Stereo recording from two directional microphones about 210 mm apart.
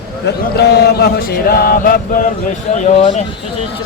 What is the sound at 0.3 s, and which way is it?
Chant, 50° left (ahead or behind).